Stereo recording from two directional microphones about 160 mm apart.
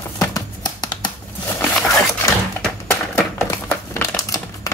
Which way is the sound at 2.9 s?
15° left (ahead or behind).